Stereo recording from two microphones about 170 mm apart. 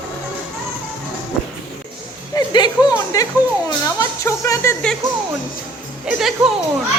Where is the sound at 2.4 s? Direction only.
25° left (ahead or behind).